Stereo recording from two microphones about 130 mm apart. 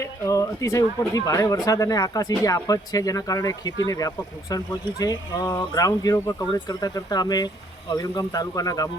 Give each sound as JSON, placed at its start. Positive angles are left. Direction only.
{"t": 0.0, "sound": "speech", "side_deg": 25}